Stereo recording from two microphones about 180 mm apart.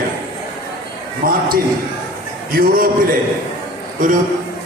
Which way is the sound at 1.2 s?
50° right (ahead or behind).